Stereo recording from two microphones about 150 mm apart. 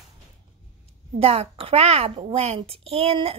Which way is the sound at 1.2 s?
40° right (ahead or behind).